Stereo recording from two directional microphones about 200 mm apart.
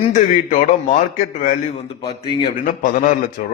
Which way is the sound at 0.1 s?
40° left (ahead or behind).